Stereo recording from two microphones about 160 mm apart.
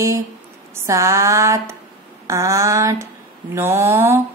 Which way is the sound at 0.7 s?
20° right (ahead or behind).